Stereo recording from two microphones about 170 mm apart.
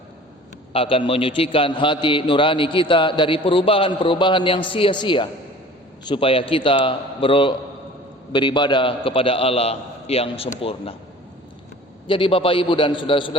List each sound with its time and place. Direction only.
0.7 s a man's voice: 30° left (ahead or behind)
12.0 s a man's voice: 30° left (ahead or behind)